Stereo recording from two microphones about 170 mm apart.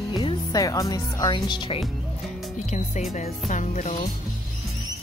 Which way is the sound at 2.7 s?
45° left (ahead or behind).